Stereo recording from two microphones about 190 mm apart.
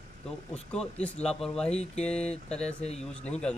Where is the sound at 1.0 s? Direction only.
5° left (ahead or behind).